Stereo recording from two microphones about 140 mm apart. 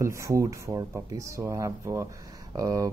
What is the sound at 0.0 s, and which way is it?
Speech, 25° right (ahead or behind).